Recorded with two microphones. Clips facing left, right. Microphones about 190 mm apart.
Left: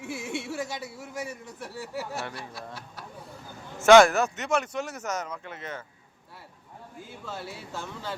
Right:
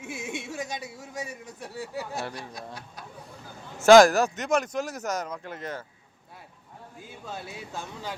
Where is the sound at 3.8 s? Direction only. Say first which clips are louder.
Right 1 dB; 35° right (ahead or behind).